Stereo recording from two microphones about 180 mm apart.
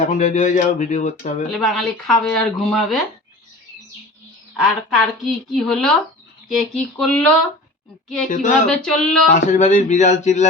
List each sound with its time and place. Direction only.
0.0 s speech: 40° left (ahead or behind)
1.5 s speech: centre (ahead or behind)
4.6 s speech: centre (ahead or behind)
8.3 s speech: 45° left (ahead or behind)
8.6 s speech: 5° left (ahead or behind)
9.5 s speech: 45° left (ahead or behind)